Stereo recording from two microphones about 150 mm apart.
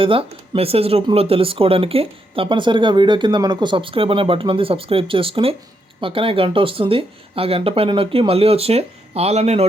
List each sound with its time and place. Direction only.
0.0 s speech: 35° right (ahead or behind)